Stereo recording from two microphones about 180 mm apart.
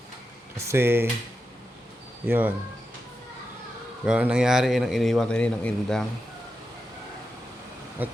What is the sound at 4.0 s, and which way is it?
A man's voice, 5° right (ahead or behind).